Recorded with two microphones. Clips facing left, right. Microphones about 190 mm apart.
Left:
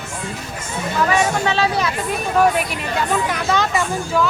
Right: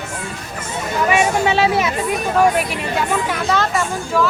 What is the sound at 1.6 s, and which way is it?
Speech, 25° right (ahead or behind).